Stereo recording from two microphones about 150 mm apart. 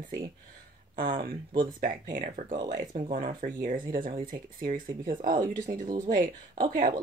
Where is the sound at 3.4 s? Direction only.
55° right (ahead or behind).